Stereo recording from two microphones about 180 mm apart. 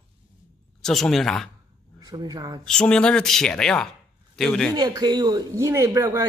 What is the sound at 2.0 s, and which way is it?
Speech, 20° right (ahead or behind).